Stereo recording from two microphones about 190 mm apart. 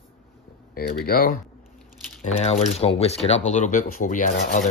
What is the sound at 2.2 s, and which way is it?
Speech, 35° left (ahead or behind).